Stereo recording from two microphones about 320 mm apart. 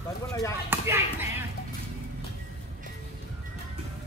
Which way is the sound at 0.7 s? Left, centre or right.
Centre.